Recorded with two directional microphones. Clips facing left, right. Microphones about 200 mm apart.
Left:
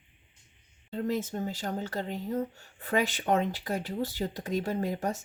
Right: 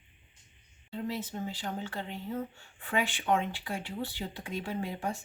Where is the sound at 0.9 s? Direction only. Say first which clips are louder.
Left 5 dB; 45° left (ahead or behind).